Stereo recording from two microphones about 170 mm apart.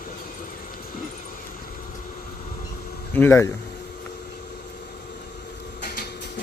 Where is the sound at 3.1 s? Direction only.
10° left (ahead or behind).